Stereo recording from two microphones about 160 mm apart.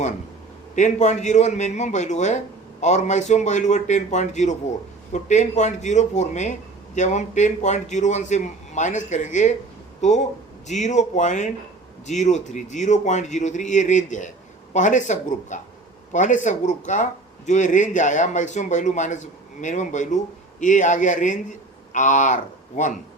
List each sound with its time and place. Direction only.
0.8 s speech: 50° left (ahead or behind)